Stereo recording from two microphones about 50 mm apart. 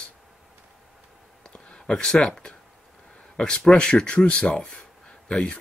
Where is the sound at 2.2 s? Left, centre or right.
Centre.